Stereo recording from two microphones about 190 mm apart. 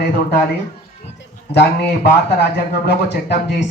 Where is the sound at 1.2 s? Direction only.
60° left (ahead or behind).